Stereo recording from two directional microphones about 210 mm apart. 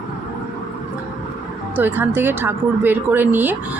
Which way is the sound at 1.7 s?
10° right (ahead or behind).